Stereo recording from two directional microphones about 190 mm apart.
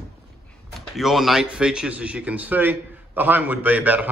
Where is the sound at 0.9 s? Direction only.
Centre (ahead or behind).